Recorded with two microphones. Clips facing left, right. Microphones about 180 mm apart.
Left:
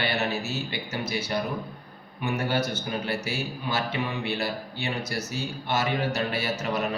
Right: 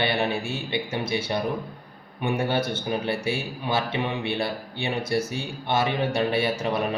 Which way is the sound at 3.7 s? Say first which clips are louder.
Right 4 dB; 25° right (ahead or behind).